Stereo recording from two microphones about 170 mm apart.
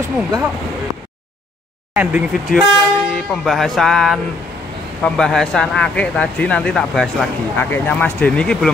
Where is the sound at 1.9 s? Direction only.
10° right (ahead or behind).